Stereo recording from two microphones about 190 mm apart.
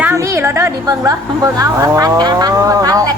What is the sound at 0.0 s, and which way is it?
Speech, 15° right (ahead or behind).